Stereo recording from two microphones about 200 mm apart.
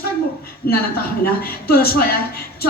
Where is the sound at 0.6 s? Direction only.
50° left (ahead or behind).